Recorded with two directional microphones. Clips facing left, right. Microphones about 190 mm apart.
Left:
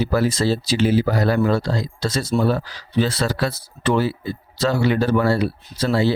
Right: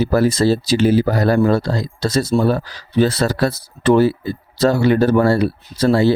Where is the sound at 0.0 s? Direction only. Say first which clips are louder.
Right 4 dB; 45° right (ahead or behind).